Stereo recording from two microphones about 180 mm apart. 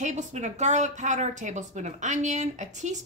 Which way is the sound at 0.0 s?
40° right (ahead or behind).